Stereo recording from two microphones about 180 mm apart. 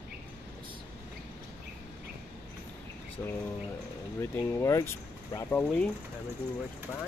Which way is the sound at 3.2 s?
20° left (ahead or behind).